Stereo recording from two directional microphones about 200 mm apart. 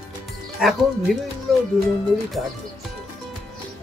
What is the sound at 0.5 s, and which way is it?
Speech, centre (ahead or behind).